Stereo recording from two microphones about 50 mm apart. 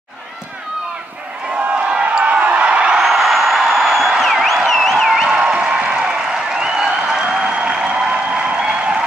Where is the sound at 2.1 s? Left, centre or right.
Right.